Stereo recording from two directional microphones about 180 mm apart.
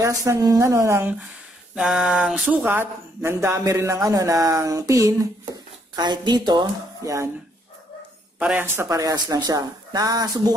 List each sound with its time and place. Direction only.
0.0 s speech: 15° right (ahead or behind)
1.8 s speech: 5° right (ahead or behind)
8.4 s speech: 10° right (ahead or behind)